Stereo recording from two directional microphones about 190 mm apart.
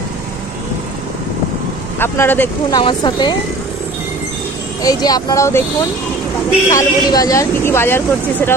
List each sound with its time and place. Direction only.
2.0 s speech: 10° left (ahead or behind)
2.7 s speech: 20° left (ahead or behind)
4.8 s speech: 20° left (ahead or behind)
6.7 s speech: 20° left (ahead or behind)